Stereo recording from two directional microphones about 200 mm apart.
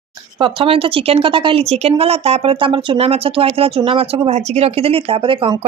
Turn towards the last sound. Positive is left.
turn(degrees=-25)  # may be behind; listen again after turning